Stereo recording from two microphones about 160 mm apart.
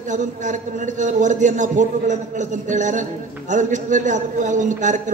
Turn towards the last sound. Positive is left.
turn(degrees=-50)  # may be behind; listen again after turning